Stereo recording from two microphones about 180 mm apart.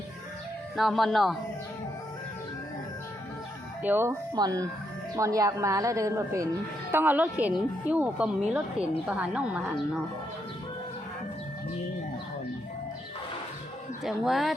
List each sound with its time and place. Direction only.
0.8 s speech: centre (ahead or behind)
3.8 s speech: 10° right (ahead or behind)
14.0 s speech: centre (ahead or behind)